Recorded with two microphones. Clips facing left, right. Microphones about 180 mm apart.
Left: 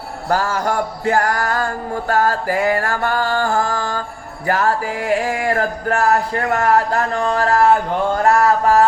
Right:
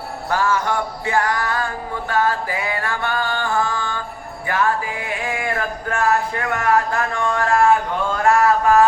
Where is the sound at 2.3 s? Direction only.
45° left (ahead or behind).